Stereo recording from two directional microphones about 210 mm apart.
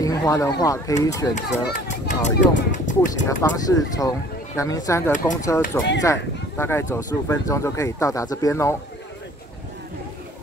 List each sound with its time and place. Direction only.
0.0 s speech: 15° left (ahead or behind)
1.3 s speech: 35° left (ahead or behind)
3.3 s speech: 15° left (ahead or behind)